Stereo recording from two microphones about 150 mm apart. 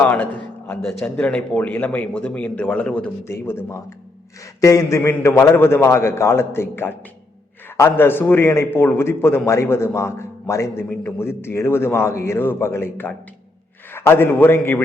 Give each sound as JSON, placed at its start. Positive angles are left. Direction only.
{"t": 0.0, "sound": "a man's voice", "side_deg": 10}